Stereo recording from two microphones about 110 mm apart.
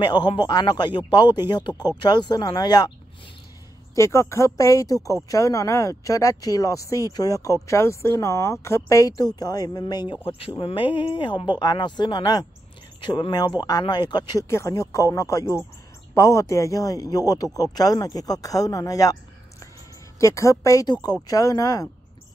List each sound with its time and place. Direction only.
0.0 s speech: 45° left (ahead or behind)
3.9 s speech: 25° left (ahead or behind)
10.2 s speech: 55° left (ahead or behind)
14.5 s speech: 25° left (ahead or behind)
20.2 s speech: 30° left (ahead or behind)